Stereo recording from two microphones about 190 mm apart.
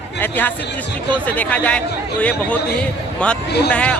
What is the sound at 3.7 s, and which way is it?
Speech, 5° left (ahead or behind).